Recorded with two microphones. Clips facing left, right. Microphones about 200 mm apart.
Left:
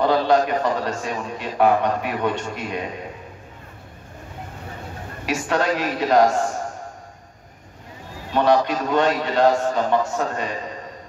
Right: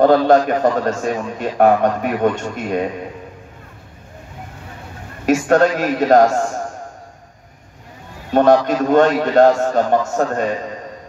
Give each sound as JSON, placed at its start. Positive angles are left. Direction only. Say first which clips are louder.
{"t": 0.0, "sound": "a man's voice", "louder": "right 6 dB", "side_deg": -50}
{"t": 5.2, "sound": "a man's voice", "louder": "right 9 dB", "side_deg": -45}
{"t": 8.3, "sound": "a man's voice", "louder": "right 5 dB", "side_deg": -50}